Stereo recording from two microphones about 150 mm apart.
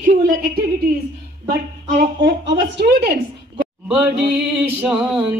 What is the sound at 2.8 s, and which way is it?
Speech, 90° right.